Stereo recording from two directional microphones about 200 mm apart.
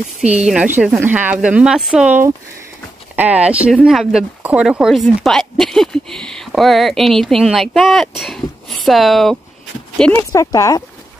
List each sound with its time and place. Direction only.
0.2 s a woman's voice: 5° right (ahead or behind)
10.3 s speech: 15° left (ahead or behind)